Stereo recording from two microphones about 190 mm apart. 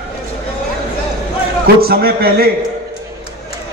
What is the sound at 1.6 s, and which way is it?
Speech, 55° right (ahead or behind).